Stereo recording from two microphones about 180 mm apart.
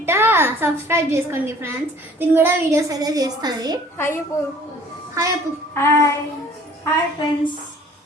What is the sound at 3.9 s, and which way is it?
Music, 10° left (ahead or behind).